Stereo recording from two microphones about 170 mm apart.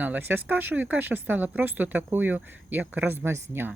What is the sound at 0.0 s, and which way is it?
Speech, 10° right (ahead or behind).